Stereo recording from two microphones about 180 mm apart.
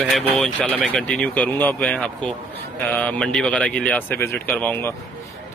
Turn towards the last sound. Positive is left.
turn(degrees=10)  # may be behind; listen again after turning